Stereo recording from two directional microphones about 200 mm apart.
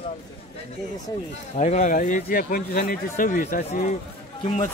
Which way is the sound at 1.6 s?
40° left (ahead or behind).